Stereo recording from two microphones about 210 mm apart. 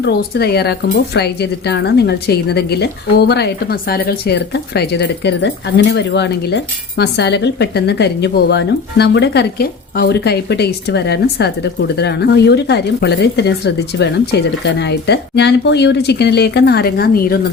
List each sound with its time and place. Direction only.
0.0 s a woman's voice: 50° left (ahead or behind)